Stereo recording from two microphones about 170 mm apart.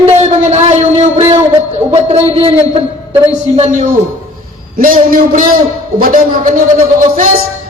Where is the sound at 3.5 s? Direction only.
45° right (ahead or behind).